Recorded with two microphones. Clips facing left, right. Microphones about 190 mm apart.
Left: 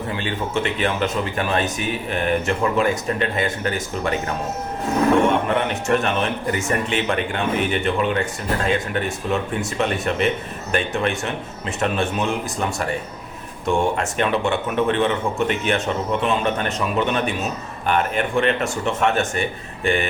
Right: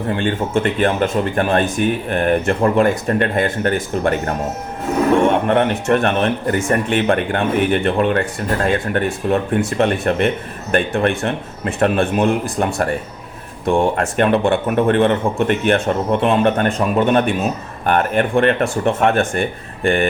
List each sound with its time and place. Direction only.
0.1 s speech: 50° right (ahead or behind)